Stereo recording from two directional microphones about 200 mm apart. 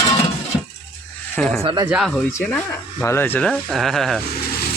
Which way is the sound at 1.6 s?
25° right (ahead or behind).